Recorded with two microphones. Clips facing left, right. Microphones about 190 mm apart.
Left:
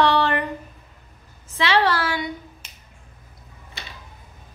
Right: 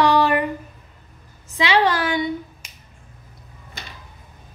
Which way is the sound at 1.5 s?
15° right (ahead or behind).